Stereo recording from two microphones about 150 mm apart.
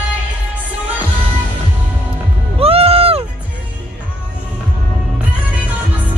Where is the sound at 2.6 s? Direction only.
40° right (ahead or behind).